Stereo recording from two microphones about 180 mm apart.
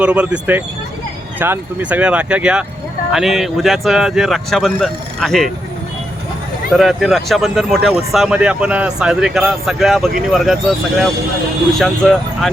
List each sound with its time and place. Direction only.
0.0 s speech: 5° right (ahead or behind)
6.7 s speech: centre (ahead or behind)
11.8 s speech: centre (ahead or behind)